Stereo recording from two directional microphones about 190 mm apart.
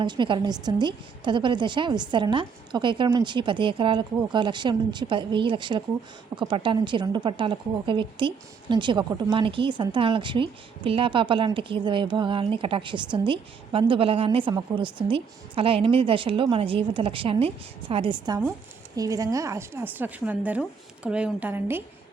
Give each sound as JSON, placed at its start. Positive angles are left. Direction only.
{"t": 0.0, "sound": "a woman's voice", "side_deg": -25}